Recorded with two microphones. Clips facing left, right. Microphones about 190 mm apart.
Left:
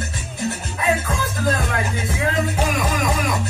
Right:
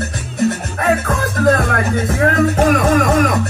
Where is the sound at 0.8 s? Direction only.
60° right (ahead or behind).